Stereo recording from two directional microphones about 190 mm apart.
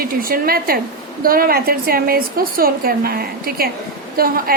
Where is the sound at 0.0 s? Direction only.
50° right (ahead or behind).